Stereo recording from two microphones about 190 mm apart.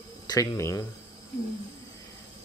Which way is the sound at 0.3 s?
15° left (ahead or behind).